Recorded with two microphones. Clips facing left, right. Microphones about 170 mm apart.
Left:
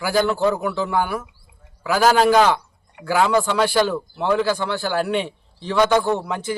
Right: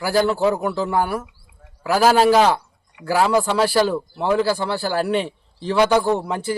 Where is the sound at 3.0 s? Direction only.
50° left (ahead or behind).